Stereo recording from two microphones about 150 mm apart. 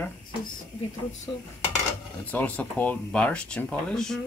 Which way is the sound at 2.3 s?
10° left (ahead or behind).